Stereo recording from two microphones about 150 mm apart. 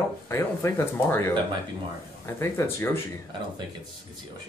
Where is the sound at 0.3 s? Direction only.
15° left (ahead or behind).